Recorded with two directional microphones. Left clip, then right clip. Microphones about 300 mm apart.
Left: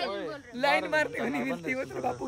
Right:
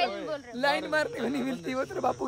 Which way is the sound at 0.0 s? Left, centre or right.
Centre.